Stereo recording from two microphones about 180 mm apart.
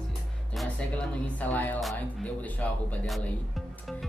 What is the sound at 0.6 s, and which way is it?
Speech, 5° left (ahead or behind).